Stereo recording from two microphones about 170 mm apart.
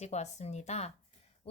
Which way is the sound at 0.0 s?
40° left (ahead or behind).